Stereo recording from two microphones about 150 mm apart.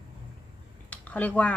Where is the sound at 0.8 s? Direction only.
10° left (ahead or behind).